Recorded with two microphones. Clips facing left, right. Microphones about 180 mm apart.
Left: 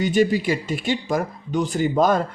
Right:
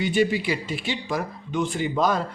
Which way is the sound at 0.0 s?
40° left (ahead or behind).